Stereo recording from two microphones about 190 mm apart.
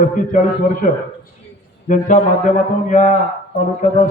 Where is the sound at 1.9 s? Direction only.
35° left (ahead or behind).